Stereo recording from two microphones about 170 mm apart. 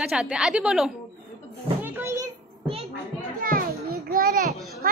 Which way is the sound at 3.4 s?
60° right (ahead or behind).